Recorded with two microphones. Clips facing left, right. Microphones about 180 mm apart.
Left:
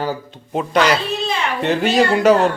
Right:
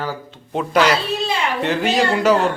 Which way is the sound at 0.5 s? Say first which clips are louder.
Even; centre (ahead or behind).